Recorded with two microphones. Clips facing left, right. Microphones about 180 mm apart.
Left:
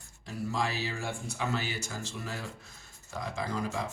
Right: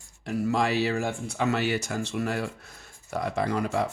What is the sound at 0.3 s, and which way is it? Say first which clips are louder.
Speech: right 8 dB; 75° right (ahead or behind).